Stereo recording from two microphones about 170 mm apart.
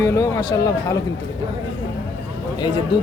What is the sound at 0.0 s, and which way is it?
Speech, 20° left (ahead or behind).